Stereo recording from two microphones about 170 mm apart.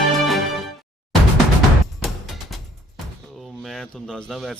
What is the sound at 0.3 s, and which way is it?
Music, centre (ahead or behind).